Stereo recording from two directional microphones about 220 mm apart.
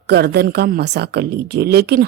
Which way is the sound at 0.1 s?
45° right (ahead or behind).